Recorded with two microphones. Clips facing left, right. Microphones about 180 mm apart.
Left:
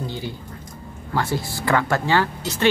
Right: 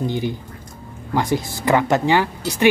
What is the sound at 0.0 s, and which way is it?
Speech, 15° right (ahead or behind).